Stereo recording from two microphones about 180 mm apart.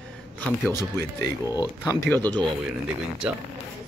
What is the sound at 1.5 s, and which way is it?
Speech, 20° left (ahead or behind).